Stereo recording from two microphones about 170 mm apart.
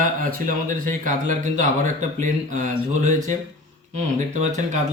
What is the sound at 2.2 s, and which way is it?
Speech, 50° right (ahead or behind).